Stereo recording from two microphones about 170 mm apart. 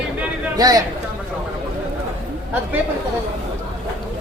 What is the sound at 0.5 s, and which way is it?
Speech, 20° right (ahead or behind).